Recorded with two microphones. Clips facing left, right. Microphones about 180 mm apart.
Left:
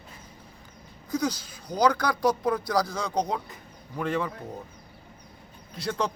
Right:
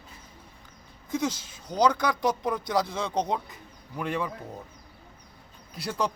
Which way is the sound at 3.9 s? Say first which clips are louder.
Left 2 dB; 5° right (ahead or behind).